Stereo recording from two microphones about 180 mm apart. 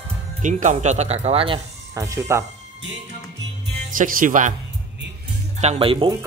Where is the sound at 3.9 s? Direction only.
50° right (ahead or behind).